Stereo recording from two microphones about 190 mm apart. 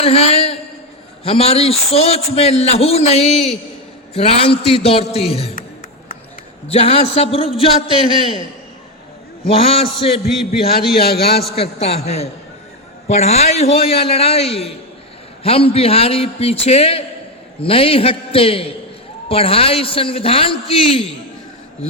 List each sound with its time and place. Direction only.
0.0 s a man's voice: 30° left (ahead or behind)
6.7 s a man's voice: 35° left (ahead or behind)
9.6 s a man's voice: 30° left (ahead or behind)
11.0 s a man's voice: 55° left (ahead or behind)
11.5 s a man's voice: 35° left (ahead or behind)